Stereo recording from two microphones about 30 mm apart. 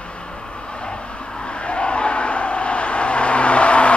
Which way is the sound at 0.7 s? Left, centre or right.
Left.